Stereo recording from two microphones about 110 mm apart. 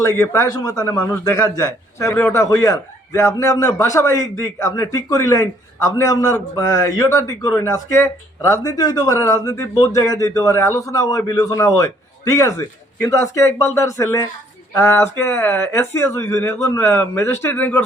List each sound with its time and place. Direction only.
0.0 s a man's voice: 30° left (ahead or behind)